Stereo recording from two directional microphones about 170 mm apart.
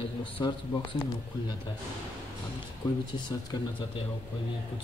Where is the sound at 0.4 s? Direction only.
30° left (ahead or behind).